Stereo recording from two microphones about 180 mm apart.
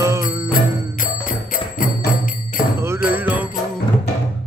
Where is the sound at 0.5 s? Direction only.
50° left (ahead or behind).